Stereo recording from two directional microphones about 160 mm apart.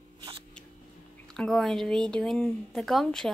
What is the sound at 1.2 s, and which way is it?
Speech, 5° left (ahead or behind).